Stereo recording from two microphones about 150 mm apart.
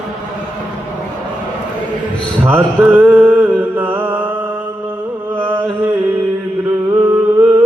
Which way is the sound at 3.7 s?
10° right (ahead or behind).